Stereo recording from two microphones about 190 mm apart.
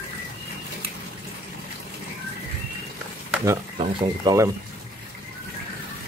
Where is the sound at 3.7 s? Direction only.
30° right (ahead or behind).